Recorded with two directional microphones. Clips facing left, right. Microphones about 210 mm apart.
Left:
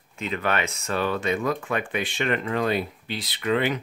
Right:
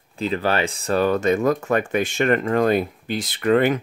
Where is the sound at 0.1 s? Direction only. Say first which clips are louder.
Right 5 dB; 35° right (ahead or behind).